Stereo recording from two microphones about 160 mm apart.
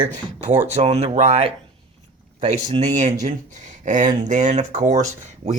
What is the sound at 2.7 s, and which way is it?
Speech, 45° right (ahead or behind).